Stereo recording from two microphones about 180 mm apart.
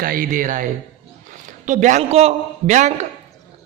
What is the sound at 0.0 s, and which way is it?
A man's voice, 50° right (ahead or behind).